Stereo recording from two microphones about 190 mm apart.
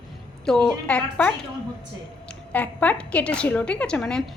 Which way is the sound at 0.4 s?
5° left (ahead or behind).